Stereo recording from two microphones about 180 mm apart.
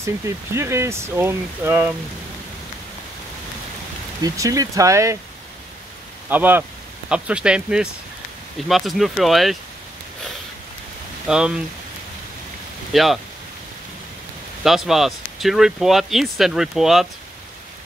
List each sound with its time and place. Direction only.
0.6 s speech: 15° right (ahead or behind)
4.2 s speech: 20° right (ahead or behind)
6.2 s speech: 10° right (ahead or behind)
11.2 s speech: 5° right (ahead or behind)
12.9 s speech: centre (ahead or behind)
14.6 s speech: centre (ahead or behind)